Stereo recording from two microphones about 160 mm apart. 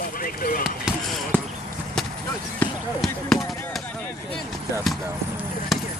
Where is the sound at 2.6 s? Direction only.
10° left (ahead or behind).